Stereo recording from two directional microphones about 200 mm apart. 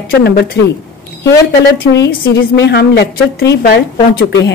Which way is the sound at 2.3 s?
60° left (ahead or behind).